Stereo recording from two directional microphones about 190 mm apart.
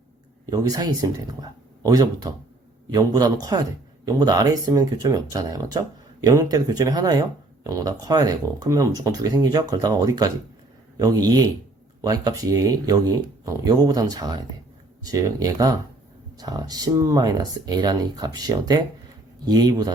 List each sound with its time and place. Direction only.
0.5 s speech: 20° right (ahead or behind)